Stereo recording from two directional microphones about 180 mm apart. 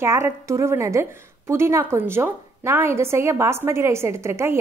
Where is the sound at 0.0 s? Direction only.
15° right (ahead or behind).